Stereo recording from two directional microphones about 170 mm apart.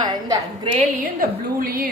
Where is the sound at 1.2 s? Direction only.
60° right (ahead or behind).